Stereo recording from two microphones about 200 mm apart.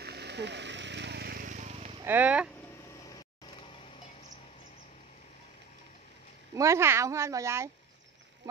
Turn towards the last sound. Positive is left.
turn(degrees=-15)  # may be behind; listen again after turning